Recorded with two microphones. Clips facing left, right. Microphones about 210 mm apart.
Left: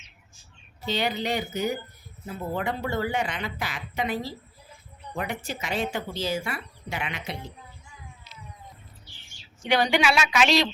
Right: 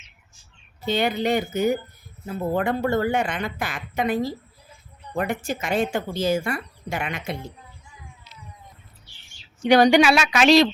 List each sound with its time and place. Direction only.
0.9 s speech: 50° right (ahead or behind)
9.6 s speech: 40° right (ahead or behind)